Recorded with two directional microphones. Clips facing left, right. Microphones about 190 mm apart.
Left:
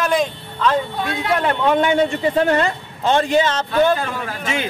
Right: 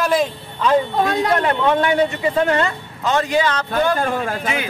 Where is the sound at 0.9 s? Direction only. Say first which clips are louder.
Right 5 dB; 45° right (ahead or behind).